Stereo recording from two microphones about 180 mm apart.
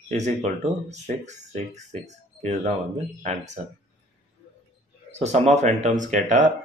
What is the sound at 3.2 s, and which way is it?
Speech, 40° right (ahead or behind).